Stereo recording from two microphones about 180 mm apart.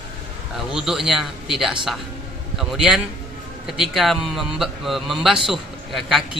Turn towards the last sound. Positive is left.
turn(degrees=0)  # may be behind; listen again after turning